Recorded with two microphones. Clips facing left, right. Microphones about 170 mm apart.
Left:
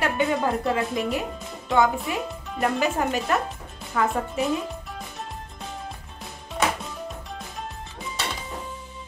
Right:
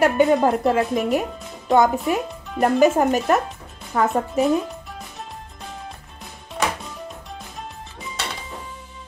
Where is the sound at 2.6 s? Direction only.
45° right (ahead or behind).